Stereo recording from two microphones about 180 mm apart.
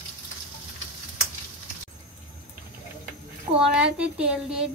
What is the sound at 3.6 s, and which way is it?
A woman's voice, 5° right (ahead or behind).